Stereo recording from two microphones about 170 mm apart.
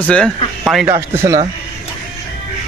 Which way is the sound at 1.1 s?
15° right (ahead or behind).